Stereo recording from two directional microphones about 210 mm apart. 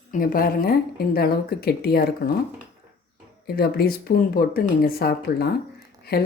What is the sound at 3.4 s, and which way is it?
Speech, 50° left (ahead or behind).